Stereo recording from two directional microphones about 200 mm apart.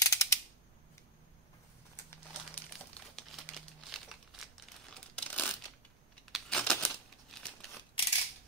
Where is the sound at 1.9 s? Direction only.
10° left (ahead or behind).